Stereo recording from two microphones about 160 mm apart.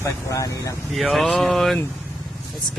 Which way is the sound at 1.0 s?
Centre (ahead or behind).